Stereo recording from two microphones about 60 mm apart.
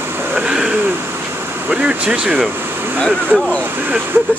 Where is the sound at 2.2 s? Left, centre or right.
Centre.